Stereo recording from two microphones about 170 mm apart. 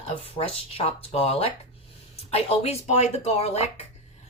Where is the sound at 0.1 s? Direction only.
35° left (ahead or behind).